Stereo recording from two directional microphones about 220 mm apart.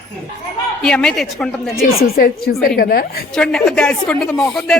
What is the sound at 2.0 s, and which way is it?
A woman's voice, 40° left (ahead or behind).